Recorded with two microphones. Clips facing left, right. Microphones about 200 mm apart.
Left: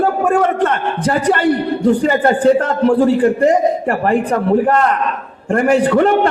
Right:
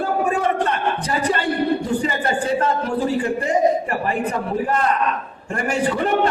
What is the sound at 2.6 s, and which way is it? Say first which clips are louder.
A man's voice: left 8 dB; 90° left.